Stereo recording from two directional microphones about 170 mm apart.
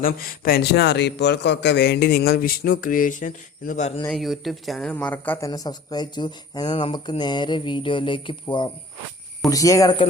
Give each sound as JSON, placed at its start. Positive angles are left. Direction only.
{"t": 0.0, "sound": "a man's voice", "side_deg": 60}
{"t": 4.1, "sound": "speech", "side_deg": 0}
{"t": 5.5, "sound": "speech", "side_deg": 25}